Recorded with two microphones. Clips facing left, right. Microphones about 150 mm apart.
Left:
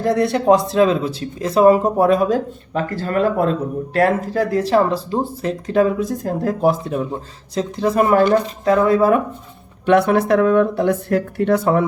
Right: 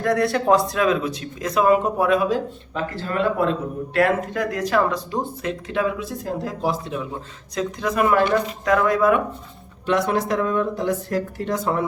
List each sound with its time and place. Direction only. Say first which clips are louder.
0.0 s speech: left 3 dB; 25° left (ahead or behind); by 7.1 s 50° left (ahead or behind)
7.5 s speech: left 5 dB; 30° left (ahead or behind)
9.8 s speech: left 7 dB; 60° left (ahead or behind)